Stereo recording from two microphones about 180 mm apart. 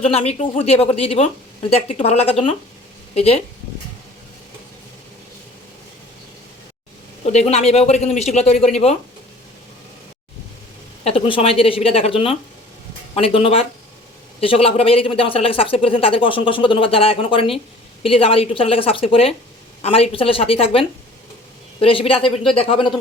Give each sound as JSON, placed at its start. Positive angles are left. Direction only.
{"t": 0.0, "sound": "speech", "side_deg": 35}
{"t": 7.3, "sound": "speech", "side_deg": 40}
{"t": 11.0, "sound": "speech", "side_deg": 30}